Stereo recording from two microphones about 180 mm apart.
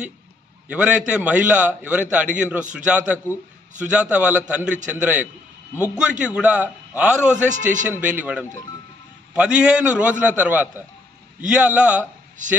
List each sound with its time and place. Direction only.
0.7 s a man's voice: 5° right (ahead or behind)
7.4 s a man's voice: 45° right (ahead or behind)
7.9 s a man's voice: 10° right (ahead or behind)